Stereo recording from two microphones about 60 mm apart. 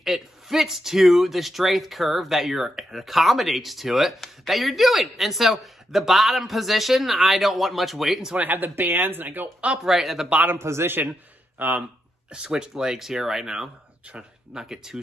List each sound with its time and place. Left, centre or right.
0.0 s speech: centre
8.4 s speech: right
9.7 s speech: centre
10.6 s a man's voice: right
11.1 s a man's voice: right
12.3 s speech: centre